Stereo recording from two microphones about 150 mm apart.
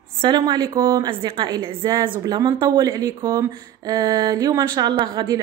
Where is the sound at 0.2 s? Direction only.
30° right (ahead or behind).